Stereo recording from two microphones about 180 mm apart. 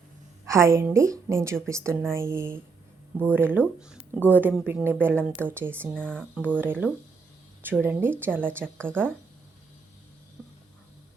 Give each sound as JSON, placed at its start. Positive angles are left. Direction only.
{"t": 0.4, "sound": "a woman's voice", "side_deg": -15}
{"t": 5.9, "sound": "speech", "side_deg": 5}
{"t": 6.6, "sound": "speech", "side_deg": -10}
{"t": 8.8, "sound": "speech", "side_deg": 5}